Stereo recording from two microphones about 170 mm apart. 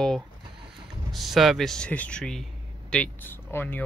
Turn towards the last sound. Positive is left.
turn(degrees=10)  # may be behind; listen again after turning